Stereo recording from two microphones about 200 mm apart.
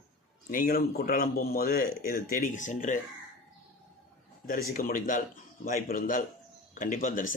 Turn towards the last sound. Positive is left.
turn(degrees=40)  # may be behind; listen again after turning